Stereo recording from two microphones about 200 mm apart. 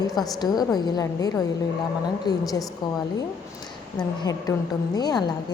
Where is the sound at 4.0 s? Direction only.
20° left (ahead or behind).